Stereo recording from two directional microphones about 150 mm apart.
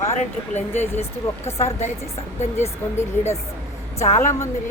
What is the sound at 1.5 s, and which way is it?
Speech, 50° left (ahead or behind).